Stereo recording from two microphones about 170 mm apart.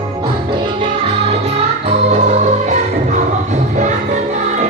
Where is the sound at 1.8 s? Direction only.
45° right (ahead or behind).